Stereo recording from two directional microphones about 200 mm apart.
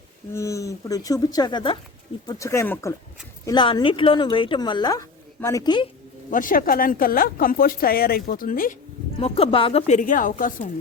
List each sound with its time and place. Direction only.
0.3 s speech: 15° left (ahead or behind)
6.3 s speech: 45° left (ahead or behind)
9.2 s a woman's voice: 30° left (ahead or behind)